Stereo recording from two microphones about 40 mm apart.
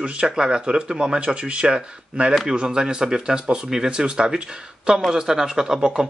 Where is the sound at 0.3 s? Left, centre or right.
Centre.